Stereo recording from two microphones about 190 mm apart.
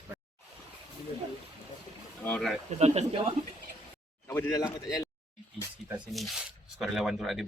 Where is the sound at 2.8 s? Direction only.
35° right (ahead or behind).